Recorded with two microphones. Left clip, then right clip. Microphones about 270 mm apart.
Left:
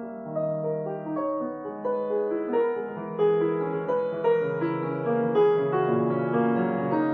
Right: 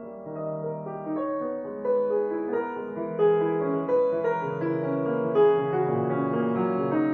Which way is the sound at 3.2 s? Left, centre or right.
Left.